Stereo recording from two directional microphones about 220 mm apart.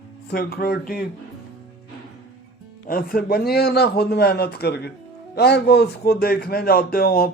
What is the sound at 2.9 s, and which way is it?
Speech, 40° left (ahead or behind).